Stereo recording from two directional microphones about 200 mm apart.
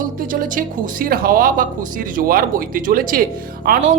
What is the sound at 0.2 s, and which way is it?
Speech, 45° right (ahead or behind).